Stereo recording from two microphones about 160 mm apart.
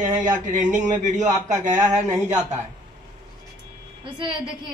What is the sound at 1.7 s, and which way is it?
Speech, 10° right (ahead or behind).